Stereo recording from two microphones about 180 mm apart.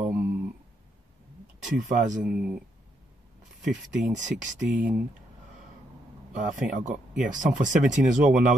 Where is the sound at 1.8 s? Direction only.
45° right (ahead or behind).